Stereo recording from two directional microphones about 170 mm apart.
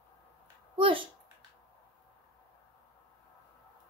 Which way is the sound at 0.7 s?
30° right (ahead or behind).